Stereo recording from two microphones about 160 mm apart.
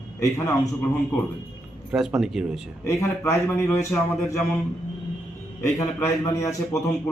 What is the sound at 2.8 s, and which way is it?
A man's voice, 15° left (ahead or behind).